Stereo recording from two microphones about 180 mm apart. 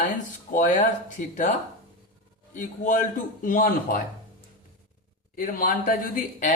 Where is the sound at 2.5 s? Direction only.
45° left (ahead or behind).